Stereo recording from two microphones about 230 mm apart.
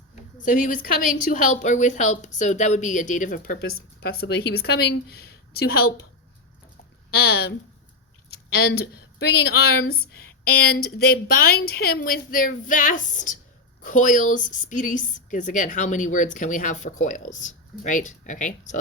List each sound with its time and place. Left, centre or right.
0.4 s a woman's voice: left
7.1 s speech: left
8.5 s a woman's voice: left